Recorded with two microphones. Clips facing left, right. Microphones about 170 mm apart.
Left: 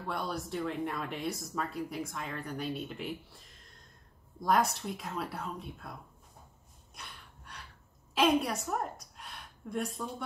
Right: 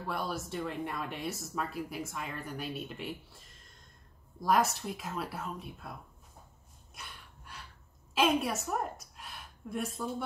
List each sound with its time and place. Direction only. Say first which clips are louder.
0.0 s speech: even; centre (ahead or behind)
7.0 s gasp: even; 5° right (ahead or behind)
8.1 s a woman's voice: left 1 dB; 5° right (ahead or behind)